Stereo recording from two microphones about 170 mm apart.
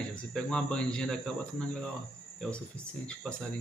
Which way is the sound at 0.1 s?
5° left (ahead or behind).